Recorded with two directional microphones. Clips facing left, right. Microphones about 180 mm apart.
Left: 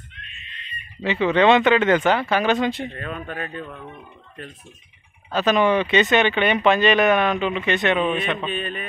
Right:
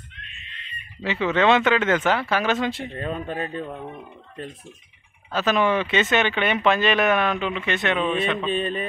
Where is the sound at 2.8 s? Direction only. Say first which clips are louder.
Right 2 dB; 25° right (ahead or behind).